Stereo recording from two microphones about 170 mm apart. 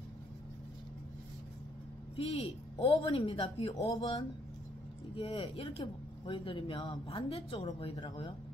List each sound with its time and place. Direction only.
2.8 s speech: 30° left (ahead or behind)